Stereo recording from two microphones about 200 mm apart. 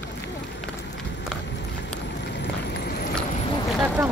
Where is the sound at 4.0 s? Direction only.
10° right (ahead or behind).